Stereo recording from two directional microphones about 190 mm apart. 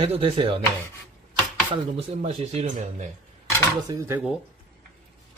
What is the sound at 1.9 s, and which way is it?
Speech, 30° right (ahead or behind).